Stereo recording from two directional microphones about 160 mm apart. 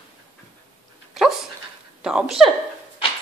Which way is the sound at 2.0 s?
5° right (ahead or behind).